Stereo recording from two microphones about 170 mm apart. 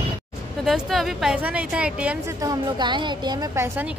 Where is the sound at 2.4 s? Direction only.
25° right (ahead or behind).